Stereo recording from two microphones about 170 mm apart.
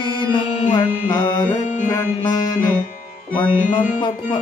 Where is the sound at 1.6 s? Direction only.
45° left (ahead or behind).